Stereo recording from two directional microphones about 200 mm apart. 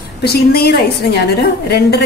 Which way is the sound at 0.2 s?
50° left (ahead or behind).